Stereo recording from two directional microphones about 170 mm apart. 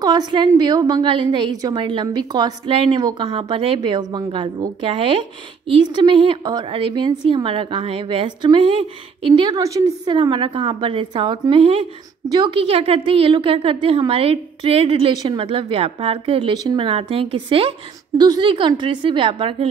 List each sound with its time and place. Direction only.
0.0 s a woman's voice: 25° right (ahead or behind)
9.5 s a woman's voice: 20° right (ahead or behind)